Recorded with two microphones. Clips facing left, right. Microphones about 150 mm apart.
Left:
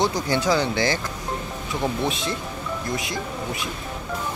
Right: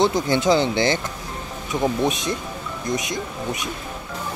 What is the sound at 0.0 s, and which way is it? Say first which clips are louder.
Speech: right 3 dB; 20° right (ahead or behind).